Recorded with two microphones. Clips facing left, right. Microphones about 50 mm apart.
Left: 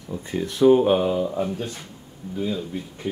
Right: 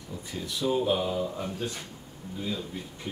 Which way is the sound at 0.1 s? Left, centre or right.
Left.